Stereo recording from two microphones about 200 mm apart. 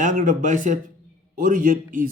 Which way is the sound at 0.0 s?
40° right (ahead or behind).